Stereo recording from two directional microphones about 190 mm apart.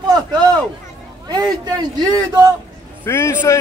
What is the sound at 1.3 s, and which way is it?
A man's voice, 20° right (ahead or behind).